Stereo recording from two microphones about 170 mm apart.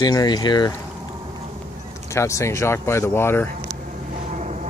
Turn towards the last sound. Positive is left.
turn(degrees=-45)  # may be behind; listen again after turning